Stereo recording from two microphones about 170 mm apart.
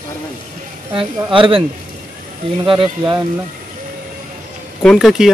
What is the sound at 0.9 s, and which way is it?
Speech, 30° right (ahead or behind).